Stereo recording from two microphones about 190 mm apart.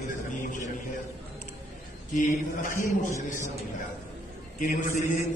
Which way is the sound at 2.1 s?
45° left (ahead or behind).